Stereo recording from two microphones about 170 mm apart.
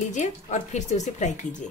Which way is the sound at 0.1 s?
45° left (ahead or behind).